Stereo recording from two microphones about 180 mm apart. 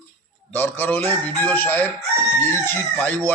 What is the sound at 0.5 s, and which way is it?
A man's voice, 10° left (ahead or behind).